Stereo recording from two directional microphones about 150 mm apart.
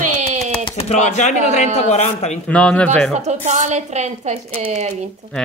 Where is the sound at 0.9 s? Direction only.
50° left (ahead or behind).